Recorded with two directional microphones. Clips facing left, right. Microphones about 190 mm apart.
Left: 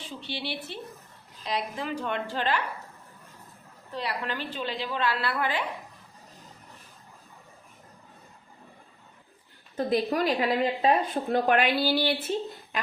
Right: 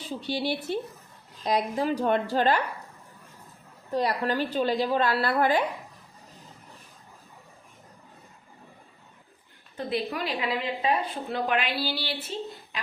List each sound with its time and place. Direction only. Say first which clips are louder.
0.0 s a woman's voice: right 6 dB; 40° right (ahead or behind)
3.9 s a woman's voice: right 7 dB; 40° right (ahead or behind)
9.7 s a woman's voice: left 4 dB; 40° left (ahead or behind)